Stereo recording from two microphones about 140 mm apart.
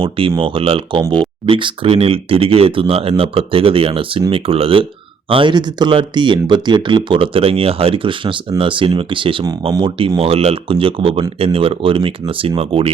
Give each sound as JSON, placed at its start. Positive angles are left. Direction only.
{"t": 0.0, "sound": "speech", "side_deg": -40}